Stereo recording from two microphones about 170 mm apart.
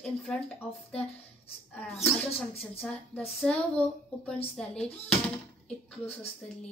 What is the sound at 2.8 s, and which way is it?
Speech, 5° left (ahead or behind).